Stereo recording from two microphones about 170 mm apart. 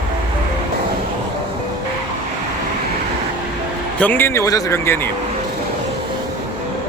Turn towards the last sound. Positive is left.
turn(degrees=20)  # may be behind; listen again after turning